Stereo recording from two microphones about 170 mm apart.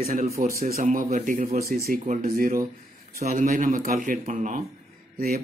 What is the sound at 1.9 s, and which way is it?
Speech, 55° right (ahead or behind).